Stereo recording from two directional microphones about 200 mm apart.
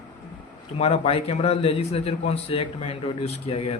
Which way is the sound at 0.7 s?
30° left (ahead or behind).